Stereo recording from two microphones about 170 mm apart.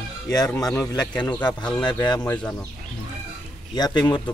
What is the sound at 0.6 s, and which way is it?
Speech, 20° left (ahead or behind).